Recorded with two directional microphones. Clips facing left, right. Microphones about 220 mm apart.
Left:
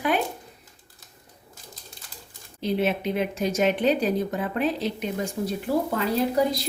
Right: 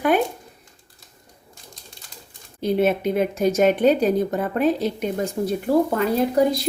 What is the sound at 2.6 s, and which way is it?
Speech, 45° right (ahead or behind).